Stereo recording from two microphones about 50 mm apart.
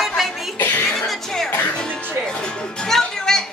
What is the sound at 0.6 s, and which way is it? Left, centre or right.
Music, left.